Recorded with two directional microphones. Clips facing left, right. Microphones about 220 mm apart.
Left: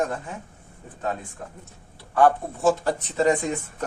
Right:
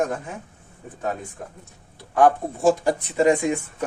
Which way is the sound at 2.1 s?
15° right (ahead or behind).